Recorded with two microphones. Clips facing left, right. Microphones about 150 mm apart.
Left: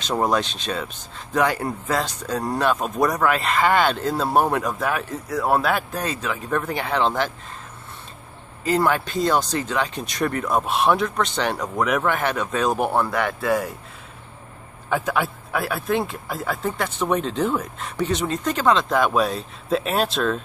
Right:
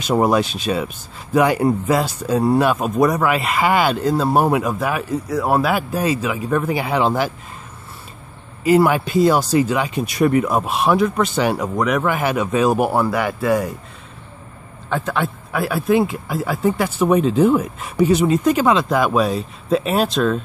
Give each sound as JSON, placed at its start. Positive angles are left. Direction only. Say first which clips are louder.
{"t": 0.0, "sound": "speech", "louder": "right 5 dB", "side_deg": -10}
{"t": 8.6, "sound": "speech", "louder": "right 6 dB", "side_deg": -10}
{"t": 14.9, "sound": "speech", "louder": "right 1 dB", "side_deg": 10}